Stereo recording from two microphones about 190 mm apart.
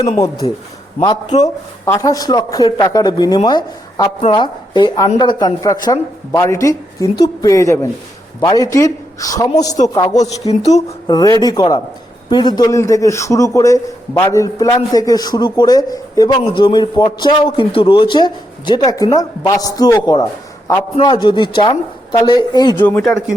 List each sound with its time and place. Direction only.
0.2 s a woman's voice: 20° left (ahead or behind)
10.4 s speech: 35° left (ahead or behind)
11.0 s speech: 20° left (ahead or behind)
22.8 s a woman's voice: 10° left (ahead or behind)